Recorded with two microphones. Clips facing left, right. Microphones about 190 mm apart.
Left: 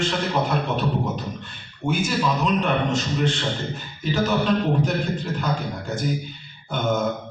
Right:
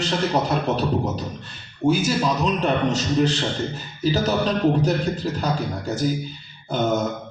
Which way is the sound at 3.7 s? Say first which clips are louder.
Right 3 dB; 35° right (ahead or behind).